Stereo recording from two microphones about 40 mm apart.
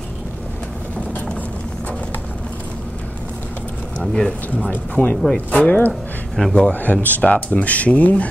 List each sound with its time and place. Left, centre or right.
4.0 s speech: centre
4.6 s speech: left
5.1 s speech: centre
5.5 s speech: left
6.7 s speech: left